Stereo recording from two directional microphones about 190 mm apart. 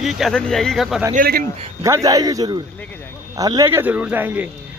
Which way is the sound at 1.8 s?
15° right (ahead or behind).